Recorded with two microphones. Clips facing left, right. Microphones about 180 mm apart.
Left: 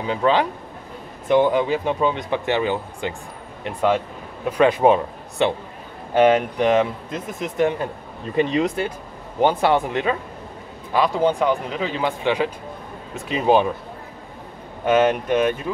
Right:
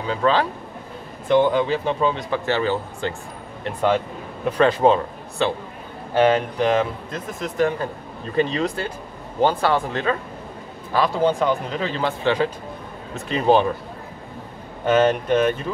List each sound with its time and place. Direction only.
0.0 s speech: 20° left (ahead or behind)
3.6 s speech: centre (ahead or behind)
4.5 s speech: 15° left (ahead or behind)
14.9 s speech: 10° left (ahead or behind)